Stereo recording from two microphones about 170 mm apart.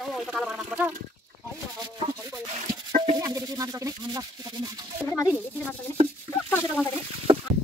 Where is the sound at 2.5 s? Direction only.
40° right (ahead or behind).